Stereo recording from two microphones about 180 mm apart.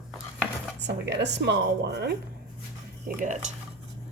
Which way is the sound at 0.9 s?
70° right (ahead or behind).